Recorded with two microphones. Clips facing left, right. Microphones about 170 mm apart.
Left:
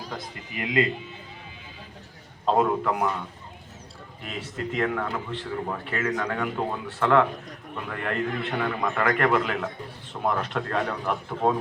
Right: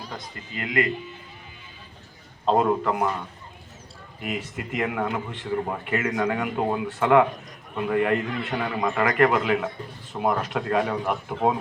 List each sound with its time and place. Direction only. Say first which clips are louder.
0.5 s speech: left 1 dB; 20° left (ahead or behind)
2.5 s a man's voice: right 1 dB; centre (ahead or behind)
4.2 s a man's voice: right 2 dB; 10° right (ahead or behind)